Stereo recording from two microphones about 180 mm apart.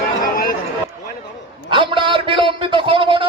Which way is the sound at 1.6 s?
30° right (ahead or behind).